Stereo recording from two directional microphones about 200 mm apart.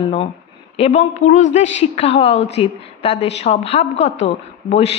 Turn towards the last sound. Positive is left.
turn(degrees=30)  # may be behind; listen again after turning